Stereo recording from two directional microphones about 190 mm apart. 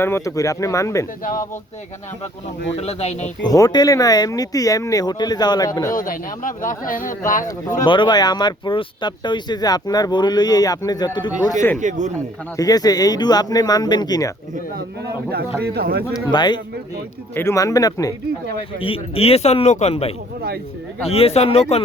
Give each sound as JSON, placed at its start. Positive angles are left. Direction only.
{"t": 0.0, "sound": "speech", "side_deg": 15}
{"t": 1.2, "sound": "speech", "side_deg": 45}
{"t": 2.7, "sound": "speech", "side_deg": 35}
{"t": 3.4, "sound": "speech", "side_deg": 20}
{"t": 5.9, "sound": "speech", "side_deg": 45}
{"t": 7.9, "sound": "speech", "side_deg": 25}
{"t": 11.8, "sound": "speech", "side_deg": -40}
{"t": 12.1, "sound": "speech", "side_deg": 20}
{"t": 15.0, "sound": "speech", "side_deg": -55}
{"t": 16.1, "sound": "speech", "side_deg": 20}
{"t": 18.8, "sound": "speech", "side_deg": 30}